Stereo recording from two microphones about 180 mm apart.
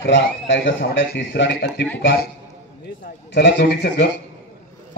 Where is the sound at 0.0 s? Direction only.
90° left; by 1.7 s 75° left (ahead or behind).